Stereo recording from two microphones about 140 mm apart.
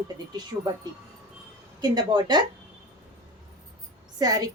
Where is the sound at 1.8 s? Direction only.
30° right (ahead or behind).